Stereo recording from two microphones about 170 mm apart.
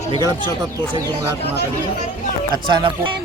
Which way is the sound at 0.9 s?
15° right (ahead or behind).